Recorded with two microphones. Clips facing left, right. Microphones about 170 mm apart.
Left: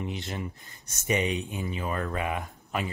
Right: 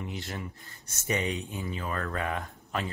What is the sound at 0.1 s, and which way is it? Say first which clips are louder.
Speech: left 3 dB; 20° left (ahead or behind).